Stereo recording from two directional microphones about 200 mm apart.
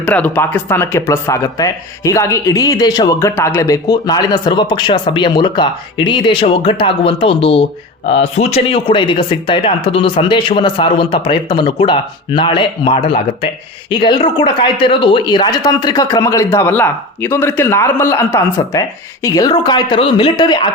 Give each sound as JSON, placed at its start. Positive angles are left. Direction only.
{"t": 0.0, "sound": "speech", "side_deg": 5}